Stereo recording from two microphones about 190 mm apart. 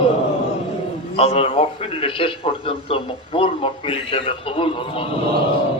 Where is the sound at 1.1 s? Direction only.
30° left (ahead or behind).